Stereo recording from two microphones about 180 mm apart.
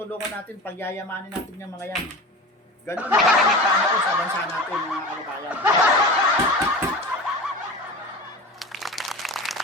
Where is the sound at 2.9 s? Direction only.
10° right (ahead or behind).